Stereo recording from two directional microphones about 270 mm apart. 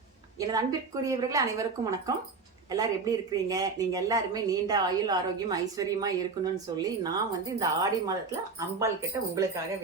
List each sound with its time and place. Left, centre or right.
0.3 s speech: centre